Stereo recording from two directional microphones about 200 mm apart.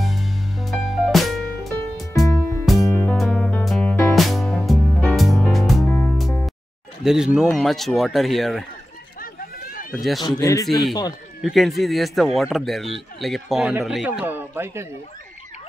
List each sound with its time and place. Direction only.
0.0 s music: centre (ahead or behind)
2.9 s music: 10° left (ahead or behind)
7.0 s speech: centre (ahead or behind)
9.2 s chatter: 45° left (ahead or behind)
9.9 s speech: centre (ahead or behind)
10.2 s a man's voice: 15° left (ahead or behind)
11.4 s speech: centre (ahead or behind)